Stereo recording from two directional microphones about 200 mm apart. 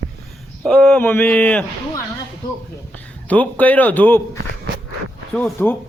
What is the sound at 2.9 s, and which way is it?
A man's voice, 5° left (ahead or behind).